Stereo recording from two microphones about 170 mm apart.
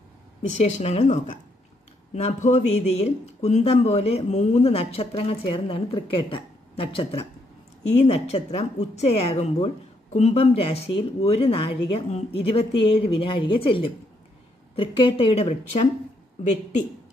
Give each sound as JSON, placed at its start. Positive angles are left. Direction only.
{"t": 0.6, "sound": "speech", "side_deg": 40}